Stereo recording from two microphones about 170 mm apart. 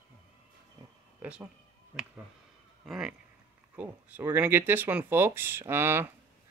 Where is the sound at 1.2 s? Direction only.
10° right (ahead or behind).